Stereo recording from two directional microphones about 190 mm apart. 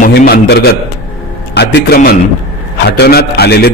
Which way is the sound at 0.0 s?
50° left (ahead or behind).